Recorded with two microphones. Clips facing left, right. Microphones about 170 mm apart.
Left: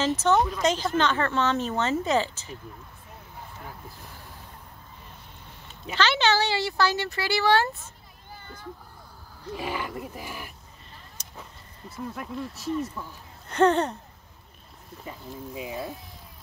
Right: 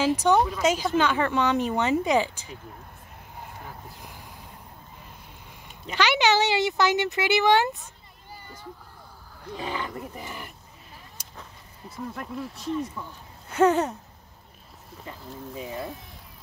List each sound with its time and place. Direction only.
0.0 s speech: 15° right (ahead or behind)
5.9 s speech: 15° right (ahead or behind)
9.5 s speech: 5° left (ahead or behind)
11.2 s a sound: 10° right (ahead or behind)
11.9 s speech: centre (ahead or behind)
15.0 s speech: 15° left (ahead or behind)